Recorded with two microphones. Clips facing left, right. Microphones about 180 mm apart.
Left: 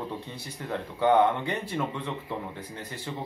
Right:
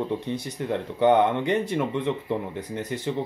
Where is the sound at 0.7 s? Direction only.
20° right (ahead or behind).